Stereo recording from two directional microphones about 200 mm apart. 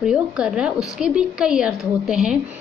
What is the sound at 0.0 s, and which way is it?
A woman's voice, 5° right (ahead or behind).